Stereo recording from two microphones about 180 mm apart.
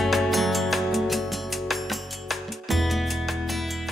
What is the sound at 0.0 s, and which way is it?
Music, centre (ahead or behind).